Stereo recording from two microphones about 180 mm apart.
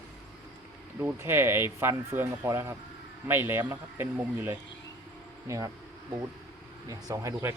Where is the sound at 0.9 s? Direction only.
10° right (ahead or behind).